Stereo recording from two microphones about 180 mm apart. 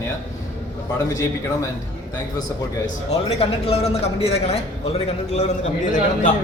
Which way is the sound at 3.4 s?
35° left (ahead or behind).